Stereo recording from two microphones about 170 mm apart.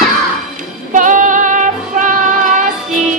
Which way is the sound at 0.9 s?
50° right (ahead or behind).